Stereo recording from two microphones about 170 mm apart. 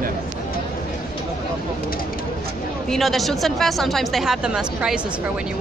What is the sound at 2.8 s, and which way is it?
A woman's voice, centre (ahead or behind).